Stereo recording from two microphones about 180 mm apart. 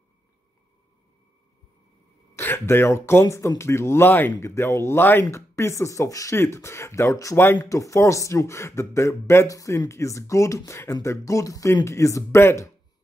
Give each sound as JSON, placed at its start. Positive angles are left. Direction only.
{"t": 2.3, "sound": "speech", "side_deg": 15}